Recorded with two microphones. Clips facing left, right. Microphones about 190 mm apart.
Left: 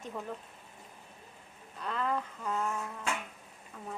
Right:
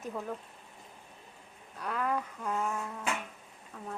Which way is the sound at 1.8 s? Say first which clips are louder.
Right 1 dB; 10° right (ahead or behind).